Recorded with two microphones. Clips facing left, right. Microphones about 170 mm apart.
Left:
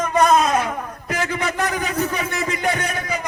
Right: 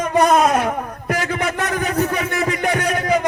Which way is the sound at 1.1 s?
60° right (ahead or behind).